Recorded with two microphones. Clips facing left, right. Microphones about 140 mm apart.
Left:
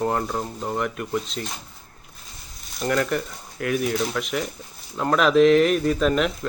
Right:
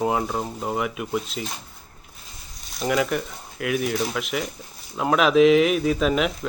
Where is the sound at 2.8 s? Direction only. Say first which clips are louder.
Even; 5° right (ahead or behind).